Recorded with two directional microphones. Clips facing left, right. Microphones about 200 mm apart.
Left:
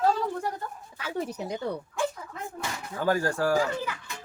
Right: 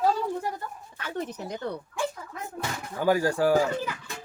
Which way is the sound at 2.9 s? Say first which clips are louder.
Right 3 dB; 15° right (ahead or behind).